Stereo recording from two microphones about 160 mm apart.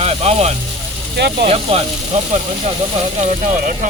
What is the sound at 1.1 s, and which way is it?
Speech, 90° right.